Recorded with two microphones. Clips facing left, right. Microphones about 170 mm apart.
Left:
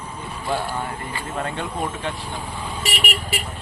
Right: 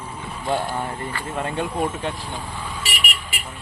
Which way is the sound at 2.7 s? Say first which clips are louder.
Left 4 dB; 35° left (ahead or behind).